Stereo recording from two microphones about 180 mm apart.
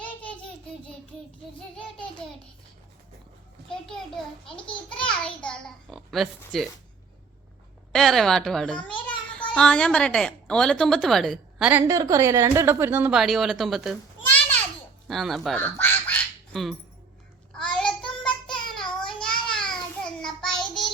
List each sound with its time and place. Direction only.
3.7 s a woman's voice: 5° left (ahead or behind)
4.5 s a child's voice: 25° left (ahead or behind)
4.9 s a woman's voice: 5° left (ahead or behind)
7.9 s a woman's voice: centre (ahead or behind)
9.0 s child singing: 5° left (ahead or behind)
9.6 s a woman's voice: 5° left (ahead or behind)
11.7 s a woman's voice: 15° right (ahead or behind); by 15.5 s centre (ahead or behind)
15.5 s quack: 10° left (ahead or behind)
17.5 s child singing: 5° left (ahead or behind)
18.7 s babbling: 5° left (ahead or behind)
20.2 s child singing: 5° left (ahead or behind)